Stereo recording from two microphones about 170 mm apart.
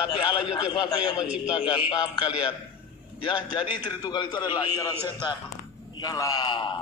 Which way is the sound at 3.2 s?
25° left (ahead or behind).